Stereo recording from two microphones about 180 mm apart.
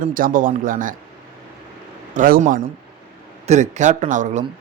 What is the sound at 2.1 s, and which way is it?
A man's voice, 45° right (ahead or behind).